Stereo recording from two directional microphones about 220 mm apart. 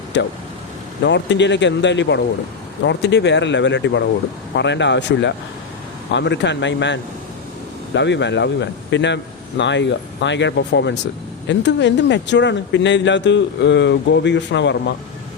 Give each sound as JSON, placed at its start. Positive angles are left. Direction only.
{"t": 0.1, "sound": "a man's voice", "side_deg": 55}